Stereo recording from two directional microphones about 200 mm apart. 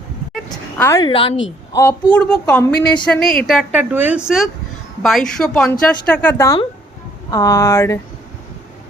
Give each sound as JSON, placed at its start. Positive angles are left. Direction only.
{"t": 0.5, "sound": "a sound", "side_deg": 15}
{"t": 1.0, "sound": "a woman's voice", "side_deg": 25}
{"t": 1.8, "sound": "a woman's voice", "side_deg": 10}